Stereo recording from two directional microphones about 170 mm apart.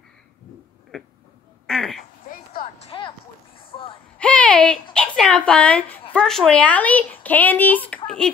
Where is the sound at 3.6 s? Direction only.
30° left (ahead or behind).